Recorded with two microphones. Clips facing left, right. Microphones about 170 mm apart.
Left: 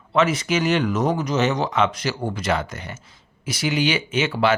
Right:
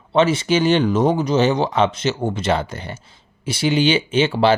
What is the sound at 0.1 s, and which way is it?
Speech, 30° right (ahead or behind).